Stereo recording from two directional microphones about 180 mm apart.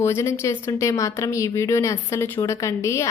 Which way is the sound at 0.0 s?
15° left (ahead or behind).